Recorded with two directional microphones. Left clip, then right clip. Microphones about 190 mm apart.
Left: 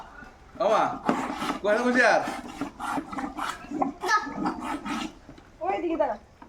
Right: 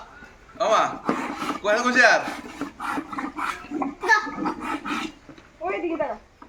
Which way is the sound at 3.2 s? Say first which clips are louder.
Right 3 dB; 45° left (ahead or behind).